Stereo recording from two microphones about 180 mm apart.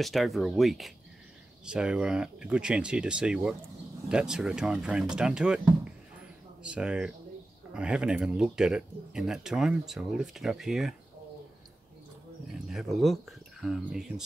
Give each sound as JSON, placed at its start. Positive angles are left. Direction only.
{"t": 0.0, "sound": "speech", "side_deg": 0}
{"t": 6.6, "sound": "speech", "side_deg": -5}
{"t": 12.6, "sound": "speech", "side_deg": 0}